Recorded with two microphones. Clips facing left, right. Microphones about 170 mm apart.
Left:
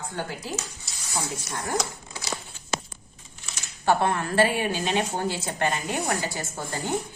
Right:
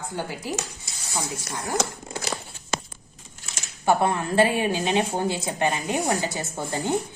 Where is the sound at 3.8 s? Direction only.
15° right (ahead or behind).